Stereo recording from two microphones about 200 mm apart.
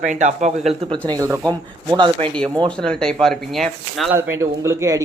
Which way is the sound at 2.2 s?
5° left (ahead or behind).